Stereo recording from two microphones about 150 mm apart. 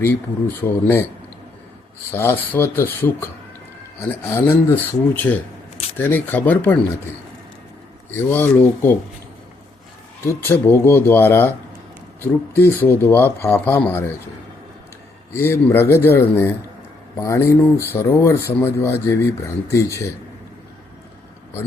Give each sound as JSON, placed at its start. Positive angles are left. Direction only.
{"t": 0.6, "sound": "speech", "side_deg": 15}
{"t": 2.1, "sound": "speech", "side_deg": 15}
{"t": 8.1, "sound": "speech", "side_deg": 15}
{"t": 10.2, "sound": "speech", "side_deg": 15}
{"t": 15.4, "sound": "speech", "side_deg": 15}